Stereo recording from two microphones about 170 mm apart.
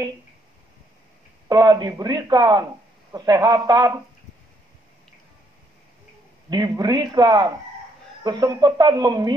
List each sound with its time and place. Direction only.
1.5 s a man's voice: 25° right (ahead or behind)
6.5 s a man's voice: 25° right (ahead or behind)